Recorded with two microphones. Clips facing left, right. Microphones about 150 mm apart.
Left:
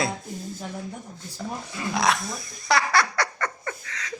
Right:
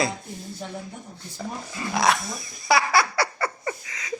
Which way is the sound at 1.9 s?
Centre (ahead or behind).